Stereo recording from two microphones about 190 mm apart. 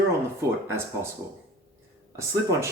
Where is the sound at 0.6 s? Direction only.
10° right (ahead or behind).